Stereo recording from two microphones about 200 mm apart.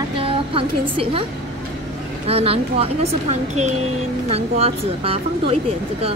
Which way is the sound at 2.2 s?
30° right (ahead or behind).